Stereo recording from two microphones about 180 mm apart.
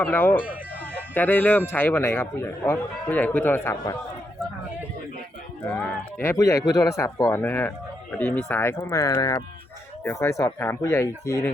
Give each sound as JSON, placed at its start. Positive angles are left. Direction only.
{"t": 0.0, "sound": "speech", "side_deg": 10}
{"t": 5.6, "sound": "speech", "side_deg": 10}